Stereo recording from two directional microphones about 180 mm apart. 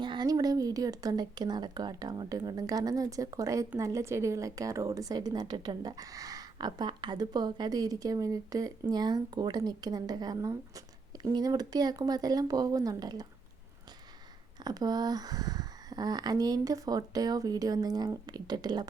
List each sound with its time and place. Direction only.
0.0 s speech: 25° right (ahead or behind)
14.6 s speech: 20° right (ahead or behind)